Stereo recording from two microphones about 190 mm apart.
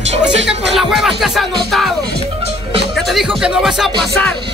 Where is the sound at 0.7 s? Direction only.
Centre (ahead or behind).